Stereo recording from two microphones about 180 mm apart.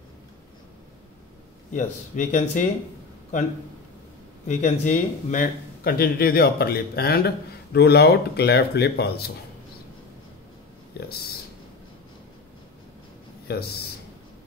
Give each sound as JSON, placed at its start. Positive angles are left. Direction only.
{"t": 1.7, "sound": "speech", "side_deg": 45}
{"t": 4.5, "sound": "speech", "side_deg": 45}
{"t": 10.9, "sound": "speech", "side_deg": 65}
{"t": 13.5, "sound": "speech", "side_deg": 60}